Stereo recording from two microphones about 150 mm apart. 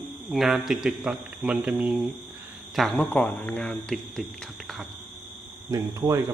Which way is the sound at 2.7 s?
5° left (ahead or behind).